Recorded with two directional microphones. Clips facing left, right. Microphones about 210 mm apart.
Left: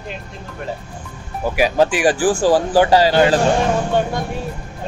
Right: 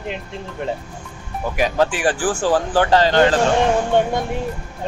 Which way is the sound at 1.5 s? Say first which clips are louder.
Left 3 dB; 10° left (ahead or behind).